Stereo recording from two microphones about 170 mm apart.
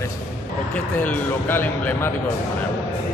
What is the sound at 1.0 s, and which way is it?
Mantra, 10° left (ahead or behind).